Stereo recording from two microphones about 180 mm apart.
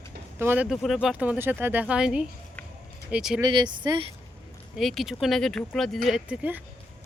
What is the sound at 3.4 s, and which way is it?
Speech, 25° right (ahead or behind).